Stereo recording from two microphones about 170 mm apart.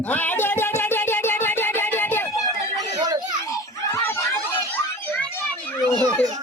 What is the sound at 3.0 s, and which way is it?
Children playing, 25° right (ahead or behind).